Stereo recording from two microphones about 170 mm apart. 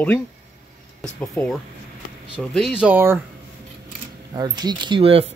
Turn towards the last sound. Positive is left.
turn(degrees=-35)  # may be behind; listen again after turning